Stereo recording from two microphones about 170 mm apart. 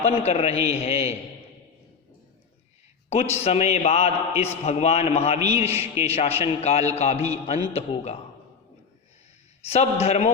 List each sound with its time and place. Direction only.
0.0 s a man's voice: 40° left (ahead or behind)
3.1 s a man's voice: 40° left (ahead or behind)
9.6 s a man's voice: 40° left (ahead or behind)